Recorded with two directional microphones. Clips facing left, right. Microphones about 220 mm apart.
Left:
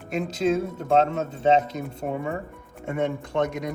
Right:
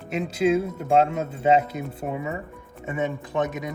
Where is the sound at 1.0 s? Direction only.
40° left (ahead or behind).